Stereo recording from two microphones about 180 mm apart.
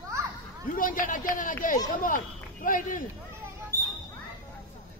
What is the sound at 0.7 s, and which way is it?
Speech, 50° left (ahead or behind).